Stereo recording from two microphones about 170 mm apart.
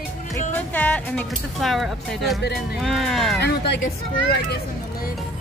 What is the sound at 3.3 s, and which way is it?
Speech, 80° left.